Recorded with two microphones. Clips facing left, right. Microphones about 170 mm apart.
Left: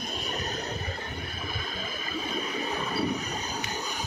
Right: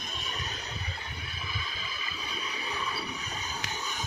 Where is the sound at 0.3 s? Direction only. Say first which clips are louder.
Left 8 dB; 45° left (ahead or behind).